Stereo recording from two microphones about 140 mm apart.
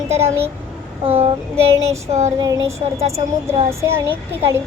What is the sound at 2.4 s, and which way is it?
A woman's voice, 25° right (ahead or behind).